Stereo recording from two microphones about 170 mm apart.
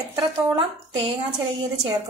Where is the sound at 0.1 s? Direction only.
30° right (ahead or behind).